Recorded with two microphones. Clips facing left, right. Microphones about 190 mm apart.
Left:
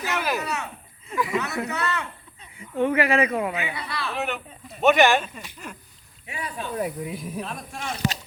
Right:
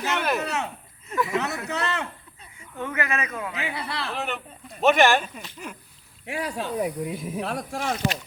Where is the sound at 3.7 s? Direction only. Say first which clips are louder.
Even; 65° right (ahead or behind).